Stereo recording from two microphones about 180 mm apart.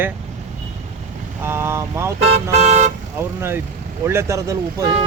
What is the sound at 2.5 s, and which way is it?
Speech, 40° right (ahead or behind).